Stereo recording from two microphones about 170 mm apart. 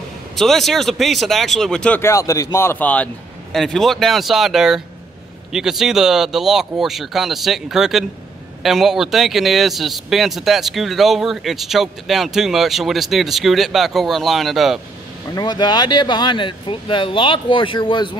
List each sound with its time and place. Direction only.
0.4 s speech: centre (ahead or behind)
15.3 s speech: 25° left (ahead or behind)